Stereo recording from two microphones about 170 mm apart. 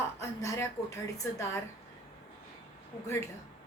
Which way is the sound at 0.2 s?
20° left (ahead or behind).